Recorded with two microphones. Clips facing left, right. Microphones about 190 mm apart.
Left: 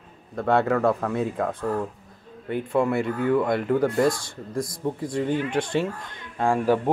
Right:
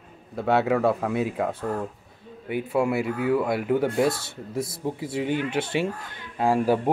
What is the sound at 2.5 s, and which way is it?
Speech, 5° right (ahead or behind).